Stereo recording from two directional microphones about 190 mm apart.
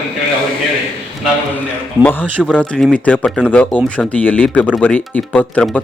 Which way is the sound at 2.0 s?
10° left (ahead or behind).